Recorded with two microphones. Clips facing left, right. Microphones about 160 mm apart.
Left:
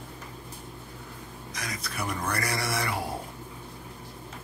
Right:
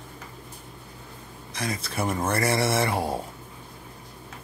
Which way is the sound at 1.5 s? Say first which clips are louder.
Right 7 dB; 30° right (ahead or behind).